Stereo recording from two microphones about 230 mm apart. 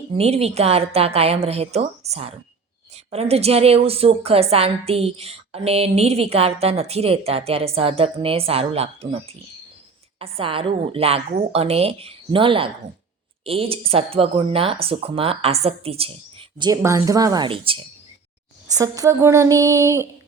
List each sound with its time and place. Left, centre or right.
0.1 s a woman's voice: right